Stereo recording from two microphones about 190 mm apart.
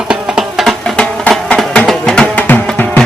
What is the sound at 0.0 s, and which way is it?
Music, 5° right (ahead or behind).